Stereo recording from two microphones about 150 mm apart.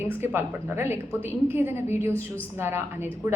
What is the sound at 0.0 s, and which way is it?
A woman's voice, 15° right (ahead or behind).